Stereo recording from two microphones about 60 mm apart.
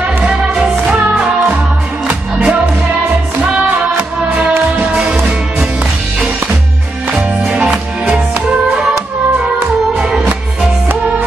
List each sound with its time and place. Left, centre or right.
0.0 s music: centre
7.1 s music: centre